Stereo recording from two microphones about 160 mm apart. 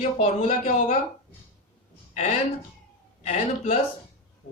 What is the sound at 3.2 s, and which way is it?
Speech, 45° left (ahead or behind).